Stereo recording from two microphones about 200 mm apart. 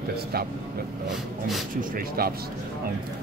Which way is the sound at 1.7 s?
45° right (ahead or behind).